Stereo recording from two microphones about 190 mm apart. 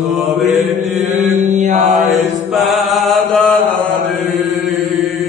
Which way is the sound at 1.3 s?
40° right (ahead or behind).